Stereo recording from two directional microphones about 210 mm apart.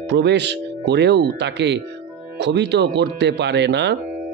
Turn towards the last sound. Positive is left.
turn(degrees=-55)  # may be behind; listen again after turning